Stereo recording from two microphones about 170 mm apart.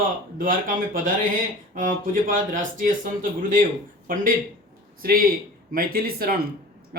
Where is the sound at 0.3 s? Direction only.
55° right (ahead or behind).